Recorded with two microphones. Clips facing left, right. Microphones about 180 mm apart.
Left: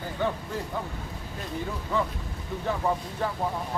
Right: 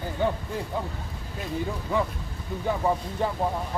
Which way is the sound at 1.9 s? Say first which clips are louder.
Right 1 dB; 15° right (ahead or behind).